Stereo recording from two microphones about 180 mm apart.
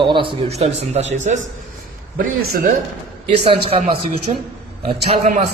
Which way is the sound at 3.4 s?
30° right (ahead or behind).